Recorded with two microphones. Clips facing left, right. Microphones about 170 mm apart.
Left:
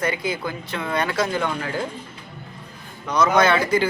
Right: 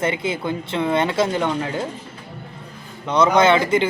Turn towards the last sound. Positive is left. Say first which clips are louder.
# right 2 dB
turn(degrees=-25)  # may be behind; listen again after turning